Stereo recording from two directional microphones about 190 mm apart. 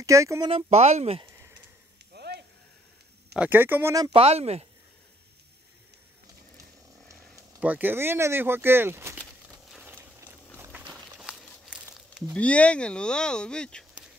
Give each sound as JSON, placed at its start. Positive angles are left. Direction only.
{"t": 0.0, "sound": "speech", "side_deg": -15}
{"t": 0.5, "sound": "speech", "side_deg": -35}
{"t": 2.1, "sound": "a sound", "side_deg": -60}
{"t": 3.3, "sound": "speech", "side_deg": -10}
{"t": 7.1, "sound": "speech", "side_deg": -15}
{"t": 9.5, "sound": "a sound", "side_deg": -5}